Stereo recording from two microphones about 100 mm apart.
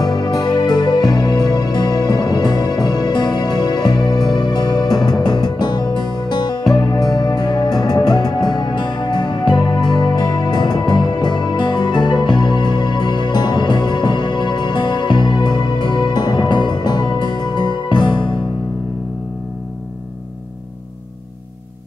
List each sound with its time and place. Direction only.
0.0 s music: 45° left (ahead or behind)
7.0 s music: centre (ahead or behind)
7.2 s music: 50° left (ahead or behind)